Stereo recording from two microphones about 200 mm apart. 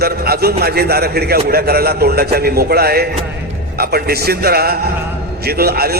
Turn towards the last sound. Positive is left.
turn(degrees=-50)  # may be behind; listen again after turning